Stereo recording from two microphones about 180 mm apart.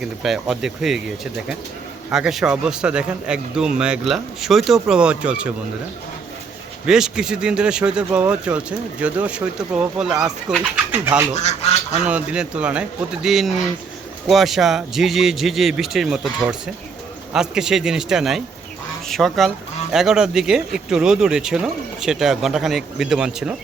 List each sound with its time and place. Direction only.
0.0 s speech: 5° right (ahead or behind)
6.8 s speech: 5° right (ahead or behind)
11.3 s speech: 40° left (ahead or behind)
12.0 s speech: 5° right (ahead or behind)